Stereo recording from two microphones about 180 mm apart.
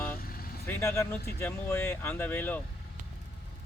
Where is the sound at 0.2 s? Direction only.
55° left (ahead or behind).